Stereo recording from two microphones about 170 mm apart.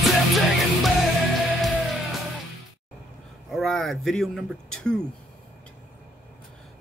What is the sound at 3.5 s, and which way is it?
Speech, centre (ahead or behind).